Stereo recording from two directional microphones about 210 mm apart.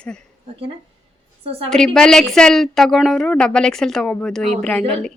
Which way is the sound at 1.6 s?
5° left (ahead or behind).